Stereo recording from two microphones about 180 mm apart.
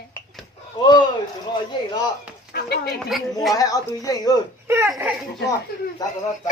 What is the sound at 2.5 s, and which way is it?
Speech, 60° left (ahead or behind).